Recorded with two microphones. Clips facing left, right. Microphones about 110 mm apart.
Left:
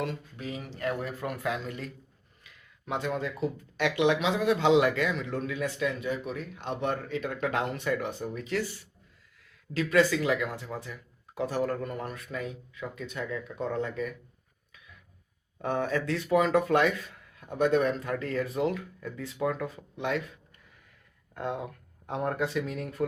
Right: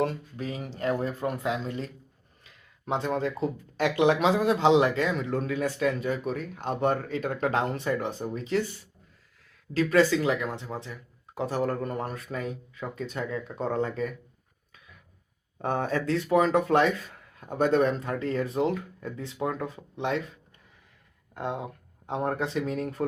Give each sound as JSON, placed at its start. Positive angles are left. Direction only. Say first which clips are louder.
{"t": 0.0, "sound": "speech", "louder": "right 5 dB", "side_deg": -35}
{"t": 9.7, "sound": "speech", "louder": "right 2 dB", "side_deg": -35}
{"t": 15.5, "sound": "speech", "louder": "right 1 dB", "side_deg": -35}
{"t": 21.3, "sound": "speech", "louder": "right 1 dB", "side_deg": -25}